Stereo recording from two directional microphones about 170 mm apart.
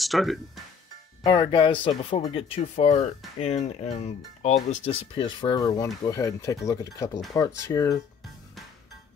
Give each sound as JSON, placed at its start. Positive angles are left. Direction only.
{"t": 0.0, "sound": "speech", "side_deg": 0}
{"t": 1.2, "sound": "speech", "side_deg": 25}